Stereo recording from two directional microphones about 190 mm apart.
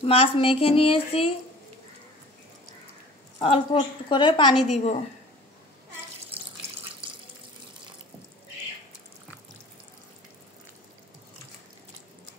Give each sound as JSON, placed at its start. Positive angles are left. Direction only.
{"t": 0.0, "sound": "a woman's voice", "side_deg": 30}
{"t": 3.3, "sound": "a woman's voice", "side_deg": 30}